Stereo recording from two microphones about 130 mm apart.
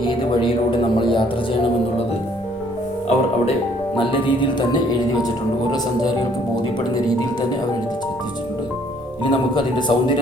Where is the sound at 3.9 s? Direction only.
40° left (ahead or behind).